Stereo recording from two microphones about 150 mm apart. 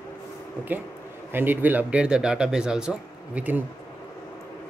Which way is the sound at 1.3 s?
15° right (ahead or behind).